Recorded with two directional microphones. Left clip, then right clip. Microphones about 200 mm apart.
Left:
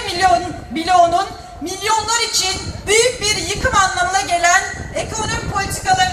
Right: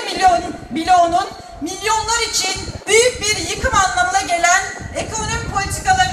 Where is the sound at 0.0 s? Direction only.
40° left (ahead or behind).